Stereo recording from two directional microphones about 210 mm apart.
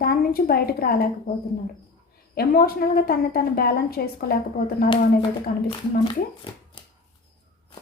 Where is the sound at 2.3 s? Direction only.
45° left (ahead or behind).